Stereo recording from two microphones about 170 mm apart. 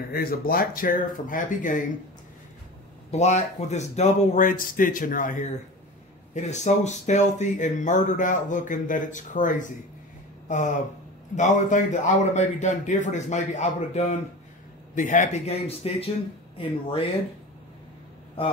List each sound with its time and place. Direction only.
0.1 s speech: 60° left (ahead or behind)
3.1 s speech: 40° left (ahead or behind)
11.3 s speech: 45° left (ahead or behind)